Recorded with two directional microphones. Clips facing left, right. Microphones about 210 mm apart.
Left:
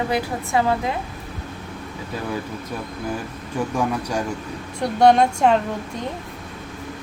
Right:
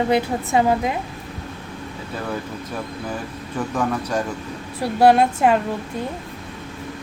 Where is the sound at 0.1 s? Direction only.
20° right (ahead or behind).